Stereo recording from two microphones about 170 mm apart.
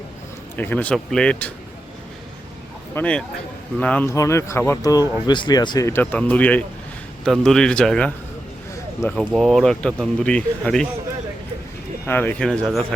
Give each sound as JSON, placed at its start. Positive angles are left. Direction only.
{"t": 0.5, "sound": "speech", "side_deg": 10}
{"t": 2.9, "sound": "speech", "side_deg": 5}
{"t": 12.0, "sound": "speech", "side_deg": 10}